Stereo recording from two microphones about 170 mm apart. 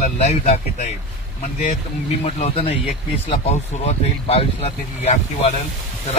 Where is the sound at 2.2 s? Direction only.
40° left (ahead or behind).